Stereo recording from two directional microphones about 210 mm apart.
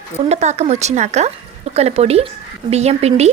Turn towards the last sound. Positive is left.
turn(degrees=-30)  # may be behind; listen again after turning